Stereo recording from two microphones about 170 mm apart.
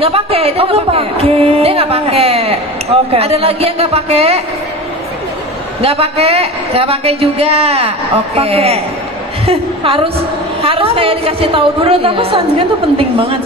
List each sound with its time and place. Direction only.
0.0 s a woman's voice: 35° right (ahead or behind)
5.8 s a woman's voice: 35° right (ahead or behind)